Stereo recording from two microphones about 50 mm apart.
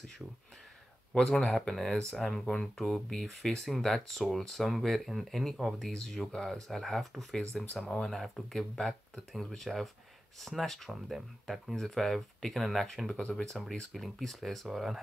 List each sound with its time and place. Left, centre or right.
1.1 s speech: centre
1.5 s speech: centre
13.6 s speech: centre